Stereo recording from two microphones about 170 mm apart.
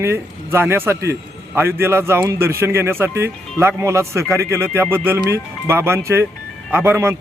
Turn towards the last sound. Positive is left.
turn(degrees=-15)  # may be behind; listen again after turning